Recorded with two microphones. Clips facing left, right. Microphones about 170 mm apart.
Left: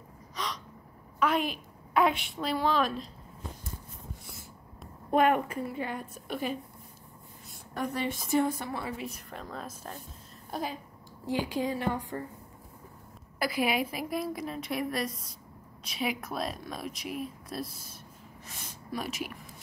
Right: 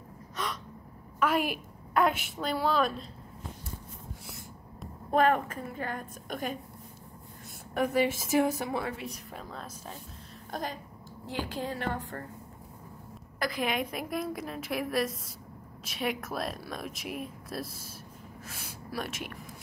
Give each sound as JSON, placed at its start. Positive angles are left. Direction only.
{"t": 0.4, "sound": "gasp", "side_deg": -5}
{"t": 1.2, "sound": "speech", "side_deg": -5}
{"t": 5.8, "sound": "a woman's voice", "side_deg": -45}
{"t": 7.9, "sound": "a woman's voice", "side_deg": -5}
{"t": 8.8, "sound": "a woman's voice", "side_deg": 0}
{"t": 13.4, "sound": "speech", "side_deg": 10}